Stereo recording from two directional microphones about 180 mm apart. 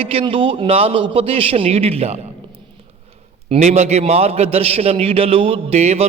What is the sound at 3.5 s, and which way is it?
A man's voice, 35° right (ahead or behind).